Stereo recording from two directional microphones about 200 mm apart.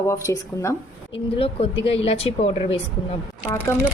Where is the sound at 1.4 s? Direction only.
30° left (ahead or behind).